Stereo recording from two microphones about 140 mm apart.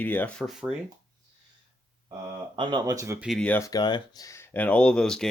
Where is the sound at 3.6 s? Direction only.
30° left (ahead or behind).